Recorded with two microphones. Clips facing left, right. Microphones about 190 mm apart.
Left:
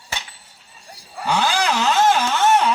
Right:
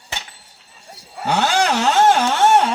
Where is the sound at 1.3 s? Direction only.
65° right (ahead or behind).